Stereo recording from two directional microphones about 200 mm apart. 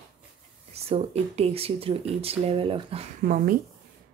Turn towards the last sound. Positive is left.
turn(degrees=-45)  # may be behind; listen again after turning